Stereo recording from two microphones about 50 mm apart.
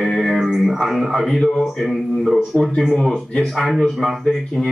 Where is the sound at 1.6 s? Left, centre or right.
Centre.